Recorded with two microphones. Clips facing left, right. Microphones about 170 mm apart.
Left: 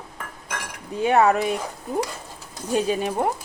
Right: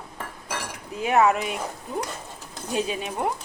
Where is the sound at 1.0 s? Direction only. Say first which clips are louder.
Left 2 dB; 35° left (ahead or behind).